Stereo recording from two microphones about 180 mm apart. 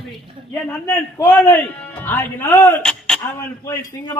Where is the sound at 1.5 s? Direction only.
10° left (ahead or behind).